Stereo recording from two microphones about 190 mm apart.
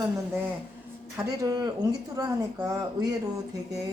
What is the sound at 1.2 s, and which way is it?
Speech, 20° right (ahead or behind).